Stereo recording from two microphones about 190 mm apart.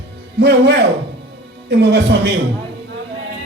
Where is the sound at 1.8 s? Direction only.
60° right (ahead or behind).